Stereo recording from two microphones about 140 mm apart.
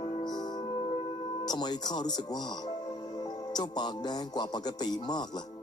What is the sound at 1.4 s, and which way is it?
Speech, 30° left (ahead or behind).